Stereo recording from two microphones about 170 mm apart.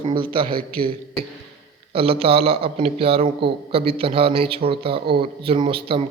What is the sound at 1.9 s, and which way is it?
Speech, 35° right (ahead or behind).